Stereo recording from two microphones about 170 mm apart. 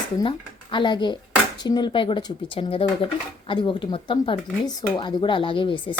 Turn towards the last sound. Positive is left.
turn(degrees=30)  # may be behind; listen again after turning